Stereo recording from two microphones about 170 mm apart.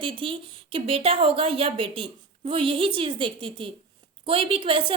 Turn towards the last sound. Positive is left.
turn(degrees=-30)  # may be behind; listen again after turning